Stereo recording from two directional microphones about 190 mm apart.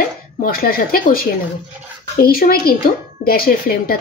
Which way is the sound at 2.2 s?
50° left (ahead or behind).